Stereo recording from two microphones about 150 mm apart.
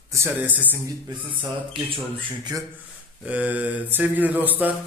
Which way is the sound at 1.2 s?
35° right (ahead or behind).